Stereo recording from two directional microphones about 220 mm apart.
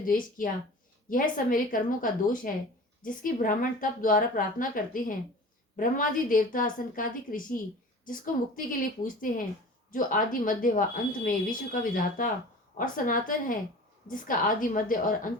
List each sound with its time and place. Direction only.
0.0 s speech: 40° left (ahead or behind)